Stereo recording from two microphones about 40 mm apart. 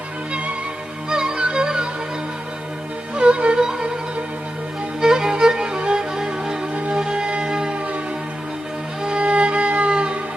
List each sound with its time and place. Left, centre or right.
1.1 s music: centre
3.2 s music: right
3.6 s music: centre
4.9 s music: centre
9.1 s music: right